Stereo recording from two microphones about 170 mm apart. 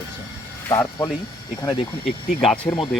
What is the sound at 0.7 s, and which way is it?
Speech, 20° left (ahead or behind).